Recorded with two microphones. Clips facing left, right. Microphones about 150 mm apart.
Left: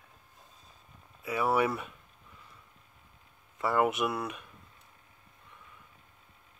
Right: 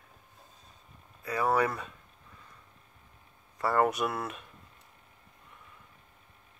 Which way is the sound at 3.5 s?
5° left (ahead or behind).